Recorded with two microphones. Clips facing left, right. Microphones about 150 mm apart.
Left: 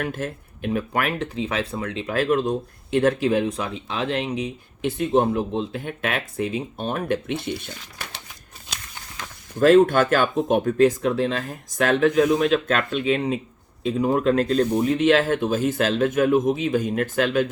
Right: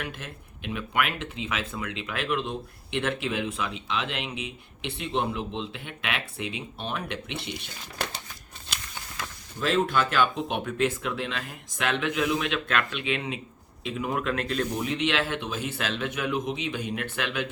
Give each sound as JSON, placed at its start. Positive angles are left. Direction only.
{"t": 0.0, "sound": "speech", "side_deg": 45}
{"t": 9.6, "sound": "speech", "side_deg": 45}